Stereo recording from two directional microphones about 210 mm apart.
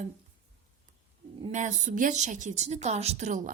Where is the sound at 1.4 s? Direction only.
35° right (ahead or behind).